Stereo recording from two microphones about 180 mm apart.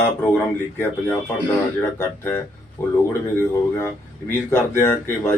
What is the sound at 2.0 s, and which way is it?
Speech, 15° left (ahead or behind).